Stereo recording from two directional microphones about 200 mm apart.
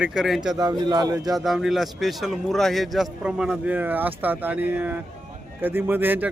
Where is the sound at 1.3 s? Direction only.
Centre (ahead or behind).